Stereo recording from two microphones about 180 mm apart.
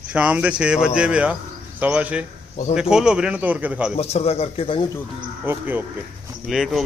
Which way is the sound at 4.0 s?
35° left (ahead or behind).